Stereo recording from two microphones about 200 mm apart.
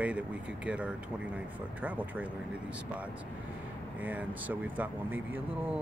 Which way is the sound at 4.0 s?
10° right (ahead or behind).